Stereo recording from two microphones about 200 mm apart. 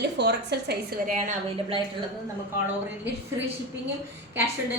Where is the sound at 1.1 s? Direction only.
40° right (ahead or behind).